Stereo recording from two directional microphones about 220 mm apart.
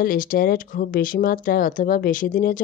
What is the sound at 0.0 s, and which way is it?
Speech, 40° left (ahead or behind).